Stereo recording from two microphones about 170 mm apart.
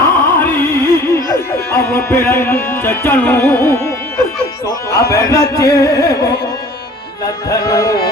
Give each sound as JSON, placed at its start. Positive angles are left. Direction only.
{"t": 0.0, "sound": "music", "side_deg": 10}
{"t": 7.5, "sound": "music", "side_deg": 20}